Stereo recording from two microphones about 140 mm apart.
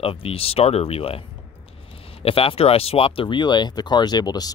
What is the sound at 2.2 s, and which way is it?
Speech, 45° left (ahead or behind).